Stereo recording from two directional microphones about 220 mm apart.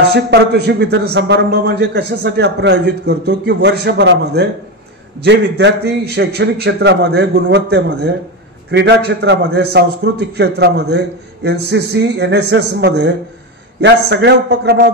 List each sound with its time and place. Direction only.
0.1 s a man's voice: 50° right (ahead or behind)